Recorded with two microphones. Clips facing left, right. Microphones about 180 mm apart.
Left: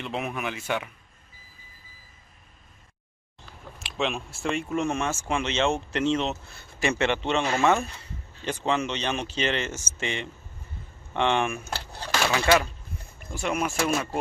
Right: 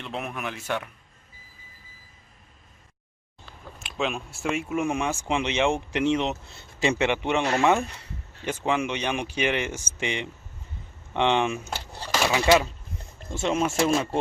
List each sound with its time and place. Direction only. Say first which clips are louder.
0.0 s speech: left 2 dB; centre (ahead or behind)
3.8 s speech: even; centre (ahead or behind); by 11.8 s 20° right (ahead or behind)
12.0 s speech: right 2 dB; 5° right (ahead or behind); by 14.0 s 25° right (ahead or behind)